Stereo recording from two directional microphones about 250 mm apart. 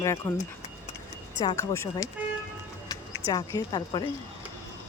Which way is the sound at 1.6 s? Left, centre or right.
Centre.